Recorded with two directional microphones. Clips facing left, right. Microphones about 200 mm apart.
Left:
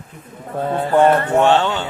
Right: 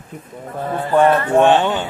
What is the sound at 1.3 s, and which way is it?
Speech, 15° right (ahead or behind).